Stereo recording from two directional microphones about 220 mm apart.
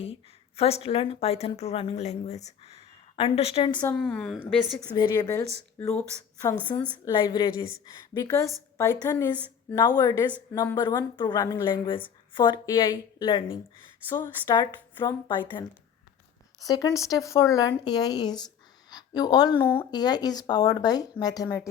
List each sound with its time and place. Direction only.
0.0 s speech: 25° left (ahead or behind)
3.9 s a woman's voice: 5° left (ahead or behind)
4.9 s speech: 15° left (ahead or behind)
7.0 s speech: 20° left (ahead or behind)
16.6 s speech: 15° left (ahead or behind)